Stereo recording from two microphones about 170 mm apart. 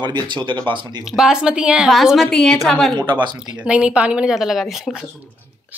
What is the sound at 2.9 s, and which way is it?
Speech, 25° right (ahead or behind).